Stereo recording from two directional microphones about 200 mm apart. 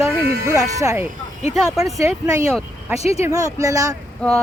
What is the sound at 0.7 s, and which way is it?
Speech, 15° right (ahead or behind).